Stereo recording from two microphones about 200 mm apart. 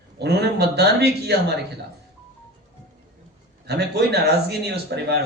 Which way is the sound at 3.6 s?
55° right (ahead or behind).